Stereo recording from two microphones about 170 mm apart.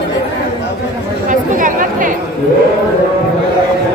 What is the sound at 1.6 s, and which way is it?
Chatter, 50° right (ahead or behind).